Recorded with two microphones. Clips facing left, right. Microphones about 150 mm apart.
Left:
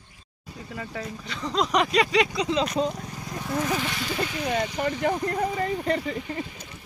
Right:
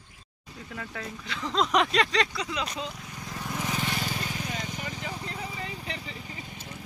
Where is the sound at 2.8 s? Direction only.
45° left (ahead or behind).